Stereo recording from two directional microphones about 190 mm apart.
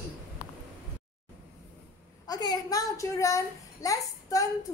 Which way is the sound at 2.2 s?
20° left (ahead or behind).